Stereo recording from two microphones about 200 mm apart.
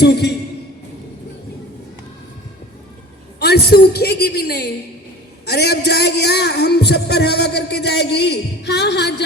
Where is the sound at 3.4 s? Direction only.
55° left (ahead or behind).